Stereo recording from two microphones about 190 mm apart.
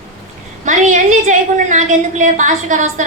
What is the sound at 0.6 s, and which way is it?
A woman's voice, 40° right (ahead or behind).